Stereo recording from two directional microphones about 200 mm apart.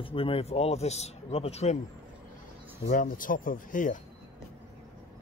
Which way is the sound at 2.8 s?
45° left (ahead or behind).